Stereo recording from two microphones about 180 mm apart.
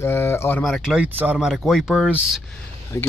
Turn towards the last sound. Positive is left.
turn(degrees=15)  # may be behind; listen again after turning